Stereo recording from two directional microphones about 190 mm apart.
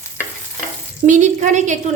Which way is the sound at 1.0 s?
40° right (ahead or behind).